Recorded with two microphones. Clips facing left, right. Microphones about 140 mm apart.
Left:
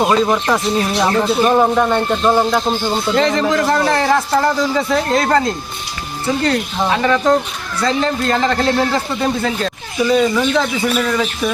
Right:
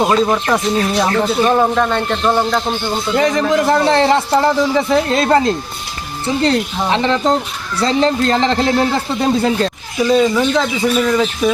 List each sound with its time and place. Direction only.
0.0 s speech: centre (ahead or behind)
3.2 s a man's voice: 15° right (ahead or behind)
10.0 s speech: centre (ahead or behind)